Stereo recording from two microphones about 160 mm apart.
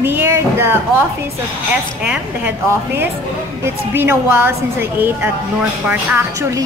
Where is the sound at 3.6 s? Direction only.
15° right (ahead or behind).